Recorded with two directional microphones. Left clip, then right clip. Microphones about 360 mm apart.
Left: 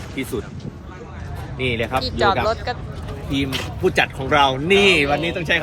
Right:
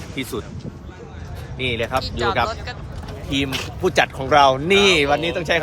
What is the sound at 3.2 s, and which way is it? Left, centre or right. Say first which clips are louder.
Speech: right 1 dB; centre.